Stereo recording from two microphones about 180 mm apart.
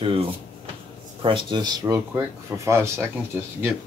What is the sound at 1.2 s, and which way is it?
Speech, 25° right (ahead or behind).